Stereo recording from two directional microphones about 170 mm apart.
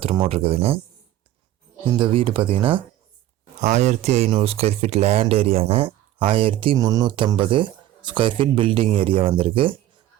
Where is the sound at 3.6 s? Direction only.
45° right (ahead or behind).